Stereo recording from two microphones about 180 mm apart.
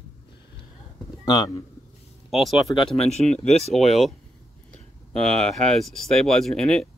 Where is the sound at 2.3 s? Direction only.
Centre (ahead or behind).